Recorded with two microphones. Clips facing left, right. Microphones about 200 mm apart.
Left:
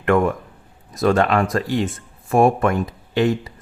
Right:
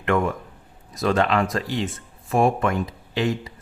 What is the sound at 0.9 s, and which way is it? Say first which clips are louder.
Speech: left 4 dB; 50° left (ahead or behind).